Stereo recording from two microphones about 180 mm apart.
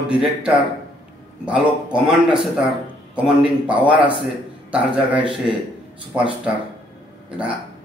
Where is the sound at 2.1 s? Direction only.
5° right (ahead or behind).